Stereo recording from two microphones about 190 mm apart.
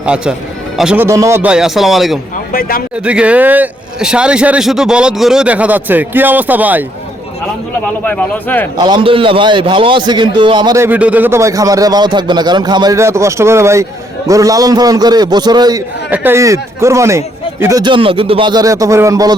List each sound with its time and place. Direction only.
0.0 s speech: 5° right (ahead or behind)
1.0 s speech: 15° right (ahead or behind)
2.5 s a man's voice: 50° left (ahead or behind)
3.0 s a man's voice: 5° right (ahead or behind)
8.0 s speech: 10° left (ahead or behind)
8.8 s a man's voice: 25° right (ahead or behind)
16.0 s a man's voice: 10° right (ahead or behind)